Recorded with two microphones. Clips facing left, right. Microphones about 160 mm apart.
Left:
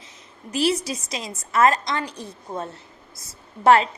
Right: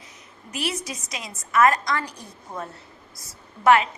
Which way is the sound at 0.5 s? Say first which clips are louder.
Left 7 dB; 30° left (ahead or behind).